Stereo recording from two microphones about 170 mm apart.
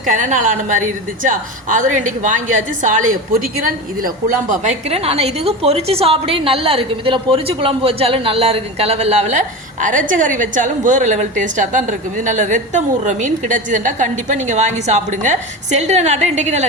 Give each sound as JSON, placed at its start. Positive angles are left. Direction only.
{"t": 0.0, "sound": "a woman's voice", "side_deg": -45}